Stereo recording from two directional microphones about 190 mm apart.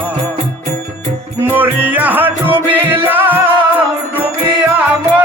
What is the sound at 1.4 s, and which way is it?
Music, 10° right (ahead or behind).